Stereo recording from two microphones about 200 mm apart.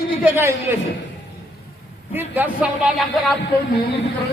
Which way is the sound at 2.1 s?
10° right (ahead or behind).